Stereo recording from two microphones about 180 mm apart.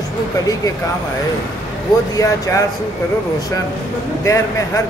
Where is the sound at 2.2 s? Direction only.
20° left (ahead or behind).